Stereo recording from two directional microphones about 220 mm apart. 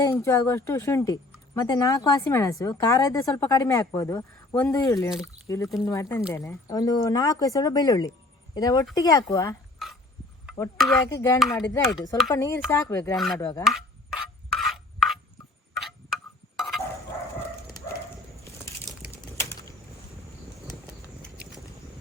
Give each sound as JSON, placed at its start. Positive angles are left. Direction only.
{"t": 0.0, "sound": "speech", "side_deg": 10}
{"t": 9.7, "sound": "a sound", "side_deg": 0}
{"t": 11.1, "sound": "speech", "side_deg": 15}
{"t": 12.1, "sound": "speech", "side_deg": 0}
{"t": 12.4, "sound": "speech", "side_deg": 15}
{"t": 13.1, "sound": "speech", "side_deg": 0}
{"t": 13.4, "sound": "speech", "side_deg": 15}
{"t": 13.7, "sound": "filing", "side_deg": 0}
{"t": 15.7, "sound": "a sound", "side_deg": 0}
{"t": 18.4, "sound": "a sound", "side_deg": 15}
{"t": 19.4, "sound": "bird", "side_deg": 10}